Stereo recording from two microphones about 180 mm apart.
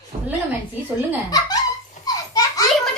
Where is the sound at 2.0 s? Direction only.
20° left (ahead or behind).